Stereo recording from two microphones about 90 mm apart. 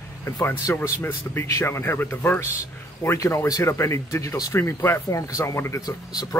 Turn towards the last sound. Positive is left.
turn(degrees=45)  # may be behind; listen again after turning